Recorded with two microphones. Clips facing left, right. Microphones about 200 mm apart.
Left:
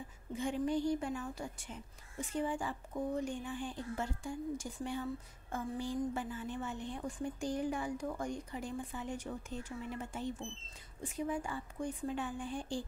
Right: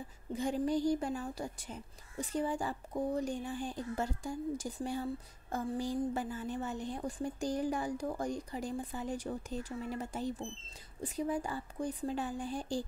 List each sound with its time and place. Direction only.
0.3 s a woman's voice: 40° right (ahead or behind)